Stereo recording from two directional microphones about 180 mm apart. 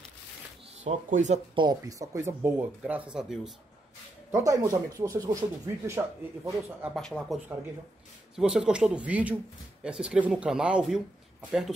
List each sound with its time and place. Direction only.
0.8 s speech: 40° right (ahead or behind)
1.5 s speech: 25° right (ahead or behind); by 3.5 s 5° right (ahead or behind)
4.3 s speech: 20° right (ahead or behind)
7.0 s speech: centre (ahead or behind)
8.4 s speech: 5° right (ahead or behind)